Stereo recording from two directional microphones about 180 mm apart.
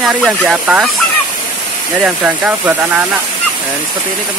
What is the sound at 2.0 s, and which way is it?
Speech, 5° right (ahead or behind).